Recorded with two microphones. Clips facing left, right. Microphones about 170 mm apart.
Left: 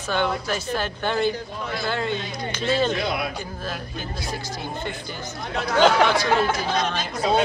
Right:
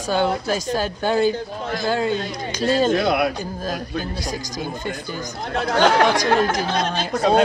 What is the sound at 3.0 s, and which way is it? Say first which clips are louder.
Speech: right 7 dB; 70° right (ahead or behind).